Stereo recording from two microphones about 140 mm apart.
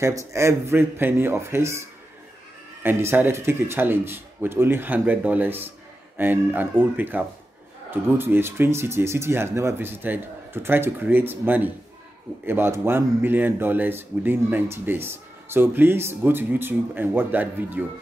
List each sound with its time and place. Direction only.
0.0 s a man's voice: 20° right (ahead or behind)